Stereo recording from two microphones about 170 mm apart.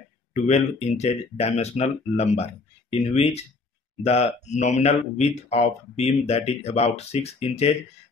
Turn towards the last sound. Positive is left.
turn(degrees=35)  # may be behind; listen again after turning